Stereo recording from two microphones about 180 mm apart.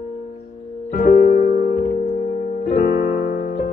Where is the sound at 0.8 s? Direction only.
45° left (ahead or behind).